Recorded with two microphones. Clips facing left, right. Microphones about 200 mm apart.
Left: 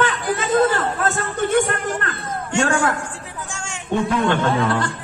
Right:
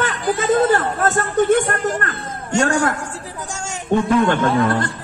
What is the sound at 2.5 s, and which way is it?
A man's voice, 40° right (ahead or behind).